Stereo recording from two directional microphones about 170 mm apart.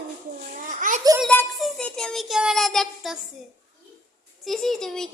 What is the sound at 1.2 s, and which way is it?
Child singing, centre (ahead or behind).